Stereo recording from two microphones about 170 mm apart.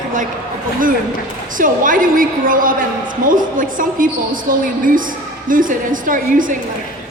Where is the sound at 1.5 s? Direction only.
50° right (ahead or behind).